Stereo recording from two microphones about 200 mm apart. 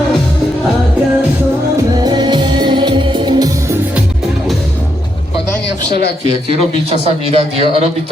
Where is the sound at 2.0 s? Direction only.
20° right (ahead or behind).